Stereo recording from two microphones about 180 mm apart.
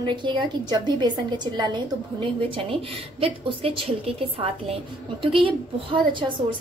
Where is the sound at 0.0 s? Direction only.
25° right (ahead or behind).